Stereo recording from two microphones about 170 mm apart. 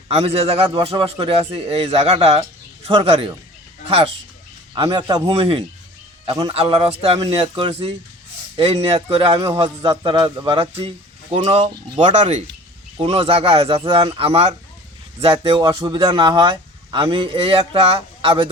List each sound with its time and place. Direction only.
0.1 s speech: 35° right (ahead or behind)
4.7 s a man's voice: 25° right (ahead or behind)
5.3 s a man's voice: 35° right (ahead or behind)